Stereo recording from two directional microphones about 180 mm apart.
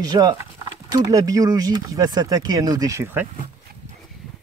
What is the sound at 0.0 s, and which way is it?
Speech, 20° right (ahead or behind).